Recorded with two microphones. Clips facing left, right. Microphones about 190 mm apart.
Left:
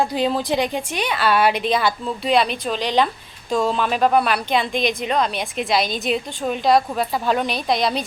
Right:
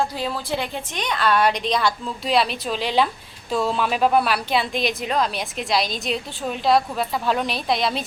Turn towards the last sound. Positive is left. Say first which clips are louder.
# left 2 dB
turn(degrees=0)  # may be behind; listen again after turning